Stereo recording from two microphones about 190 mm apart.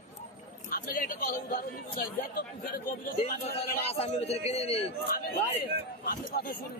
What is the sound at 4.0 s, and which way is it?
Speech, 35° left (ahead or behind).